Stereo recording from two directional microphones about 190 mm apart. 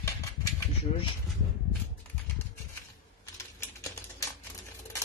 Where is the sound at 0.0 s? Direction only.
15° left (ahead or behind).